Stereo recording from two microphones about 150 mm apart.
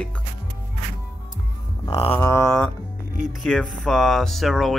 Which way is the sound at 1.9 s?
35° left (ahead or behind).